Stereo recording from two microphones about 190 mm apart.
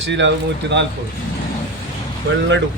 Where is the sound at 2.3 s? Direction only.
90° right.